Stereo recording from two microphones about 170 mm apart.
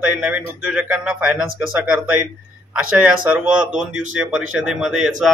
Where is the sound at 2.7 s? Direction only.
5° right (ahead or behind).